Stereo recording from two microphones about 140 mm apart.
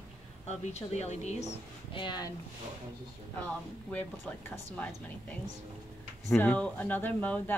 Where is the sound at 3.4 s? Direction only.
10° left (ahead or behind).